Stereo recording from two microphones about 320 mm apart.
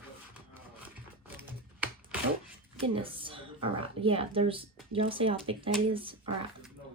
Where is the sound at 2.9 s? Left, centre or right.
Centre.